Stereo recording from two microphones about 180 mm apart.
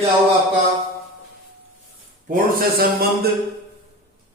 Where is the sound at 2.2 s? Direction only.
55° right (ahead or behind).